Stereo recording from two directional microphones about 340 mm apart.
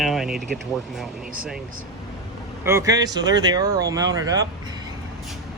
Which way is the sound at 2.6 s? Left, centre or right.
Centre.